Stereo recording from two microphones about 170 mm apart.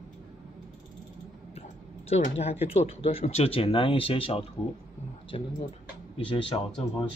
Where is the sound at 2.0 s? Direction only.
40° left (ahead or behind).